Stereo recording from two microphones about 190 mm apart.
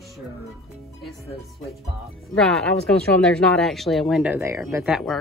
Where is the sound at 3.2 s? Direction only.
Centre (ahead or behind).